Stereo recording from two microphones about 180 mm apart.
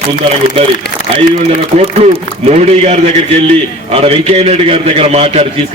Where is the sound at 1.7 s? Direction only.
35° right (ahead or behind).